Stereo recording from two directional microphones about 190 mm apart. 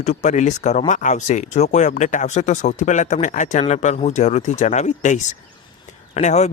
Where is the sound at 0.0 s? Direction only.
35° left (ahead or behind).